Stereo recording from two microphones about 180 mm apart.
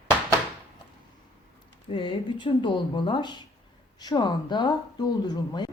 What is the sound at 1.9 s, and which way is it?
A woman's voice, 25° left (ahead or behind).